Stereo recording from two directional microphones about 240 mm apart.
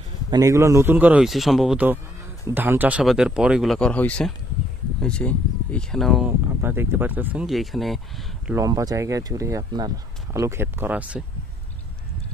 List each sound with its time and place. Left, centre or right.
0.3 s speech: centre
8.5 s speech: centre